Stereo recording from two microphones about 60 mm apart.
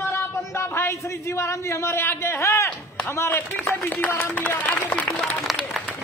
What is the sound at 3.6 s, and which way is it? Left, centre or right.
Speech, left.